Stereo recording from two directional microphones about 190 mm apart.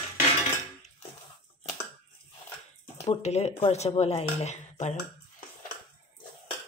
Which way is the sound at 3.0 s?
35° left (ahead or behind).